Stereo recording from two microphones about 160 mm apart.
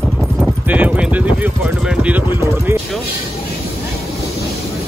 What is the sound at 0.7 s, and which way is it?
Speech, 10° right (ahead or behind).